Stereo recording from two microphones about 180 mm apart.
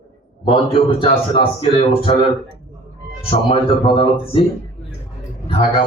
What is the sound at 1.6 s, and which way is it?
Speech, 35° left (ahead or behind).